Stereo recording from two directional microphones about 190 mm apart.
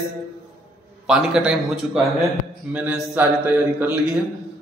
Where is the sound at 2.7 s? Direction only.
10° right (ahead or behind).